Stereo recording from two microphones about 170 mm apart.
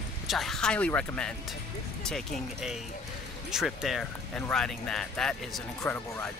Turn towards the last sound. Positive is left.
turn(degrees=10)  # may be behind; listen again after turning